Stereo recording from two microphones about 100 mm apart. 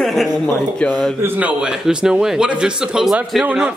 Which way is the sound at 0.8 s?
15° left (ahead or behind).